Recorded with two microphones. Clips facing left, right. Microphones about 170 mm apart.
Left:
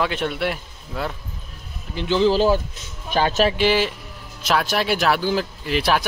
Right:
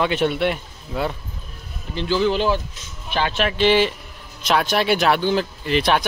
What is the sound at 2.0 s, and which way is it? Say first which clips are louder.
Speech: left 2 dB; 30° left (ahead or behind).